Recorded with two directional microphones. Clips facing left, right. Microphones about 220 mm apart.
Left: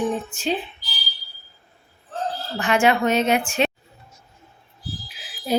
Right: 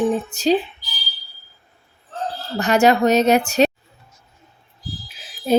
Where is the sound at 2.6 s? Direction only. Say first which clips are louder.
Right 4 dB; 40° right (ahead or behind).